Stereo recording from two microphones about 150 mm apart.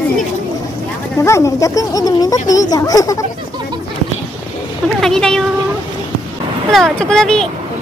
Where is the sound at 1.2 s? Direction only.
20° left (ahead or behind).